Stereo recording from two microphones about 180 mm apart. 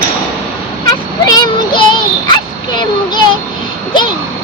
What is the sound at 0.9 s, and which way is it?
Child singing, 20° left (ahead or behind).